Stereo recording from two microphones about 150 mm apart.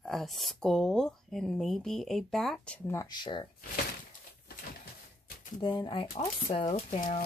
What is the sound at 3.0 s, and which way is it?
Speech, 30° left (ahead or behind).